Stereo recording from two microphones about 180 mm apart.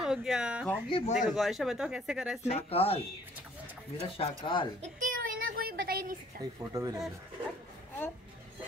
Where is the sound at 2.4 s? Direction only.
35° left (ahead or behind).